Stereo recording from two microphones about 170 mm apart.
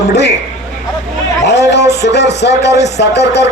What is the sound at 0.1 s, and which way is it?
Speech, 80° left.